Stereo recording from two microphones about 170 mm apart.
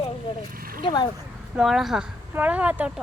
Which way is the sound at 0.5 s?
60° right (ahead or behind).